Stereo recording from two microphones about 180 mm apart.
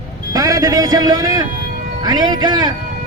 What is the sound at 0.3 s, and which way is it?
A man's voice, 20° right (ahead or behind).